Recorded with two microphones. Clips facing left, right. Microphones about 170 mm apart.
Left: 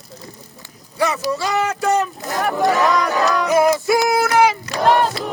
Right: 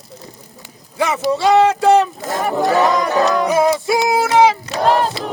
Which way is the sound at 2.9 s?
25° right (ahead or behind).